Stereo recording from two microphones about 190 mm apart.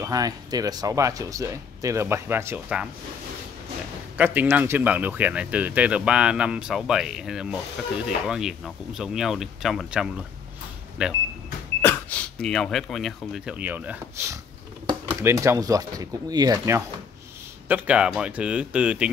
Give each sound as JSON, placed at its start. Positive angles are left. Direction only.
{"t": 0.0, "sound": "speech", "side_deg": -20}
{"t": 4.2, "sound": "speech", "side_deg": -10}
{"t": 11.8, "sound": "speech", "side_deg": 10}